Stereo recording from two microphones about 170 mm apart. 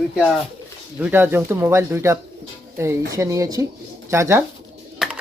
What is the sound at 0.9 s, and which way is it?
Speech, 10° right (ahead or behind).